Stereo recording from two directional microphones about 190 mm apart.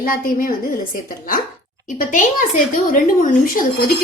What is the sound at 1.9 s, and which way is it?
A woman's voice, 45° left (ahead or behind).